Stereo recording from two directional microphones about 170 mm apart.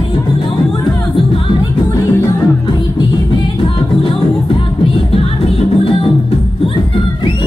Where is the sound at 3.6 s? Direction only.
30° left (ahead or behind).